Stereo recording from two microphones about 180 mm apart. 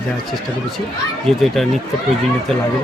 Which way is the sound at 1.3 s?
5° left (ahead or behind).